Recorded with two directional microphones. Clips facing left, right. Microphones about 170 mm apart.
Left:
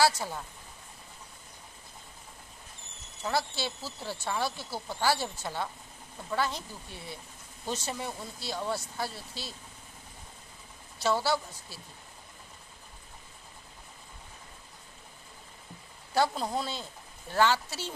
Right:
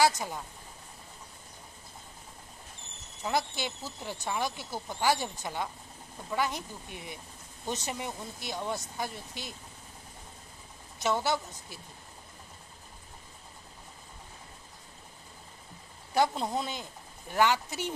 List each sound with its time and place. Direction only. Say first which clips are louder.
0.0 s speech: even; 15° right (ahead or behind)
3.3 s speech: even; 15° right (ahead or behind)
11.0 s a woman's voice: left 1 dB; 20° right (ahead or behind)
16.5 s speech: even; 15° right (ahead or behind)